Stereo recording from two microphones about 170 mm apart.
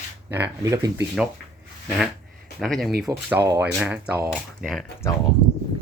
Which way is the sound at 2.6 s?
Centre (ahead or behind).